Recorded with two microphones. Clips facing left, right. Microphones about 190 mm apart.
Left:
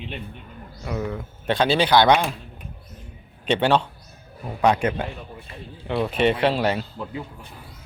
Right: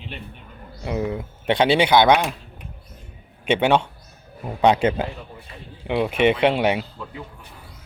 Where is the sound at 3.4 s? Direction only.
10° right (ahead or behind).